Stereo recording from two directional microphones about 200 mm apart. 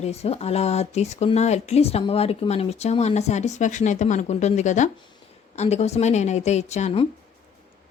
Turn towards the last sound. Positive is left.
turn(degrees=35)  # may be behind; listen again after turning